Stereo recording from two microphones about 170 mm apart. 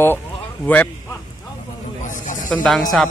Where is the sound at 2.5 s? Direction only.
5° left (ahead or behind).